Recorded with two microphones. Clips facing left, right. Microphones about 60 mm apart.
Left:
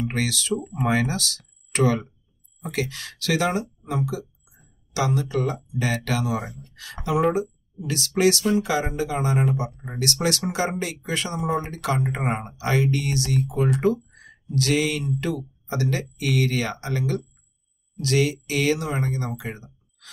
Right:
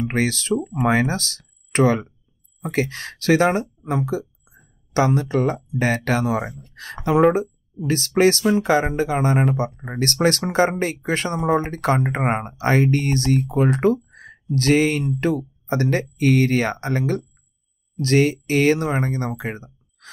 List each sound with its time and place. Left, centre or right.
0.1 s speech: right